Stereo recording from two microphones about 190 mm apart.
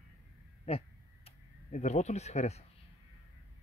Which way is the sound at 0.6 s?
30° left (ahead or behind).